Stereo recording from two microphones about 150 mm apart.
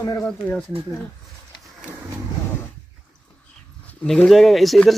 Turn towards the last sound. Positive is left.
turn(degrees=0)  # may be behind; listen again after turning